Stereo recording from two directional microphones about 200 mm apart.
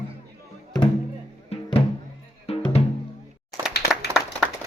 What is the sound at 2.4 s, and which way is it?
Music, 30° left (ahead or behind).